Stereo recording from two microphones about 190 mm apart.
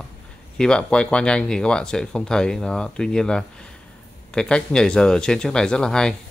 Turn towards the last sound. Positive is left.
turn(degrees=5)  # may be behind; listen again after turning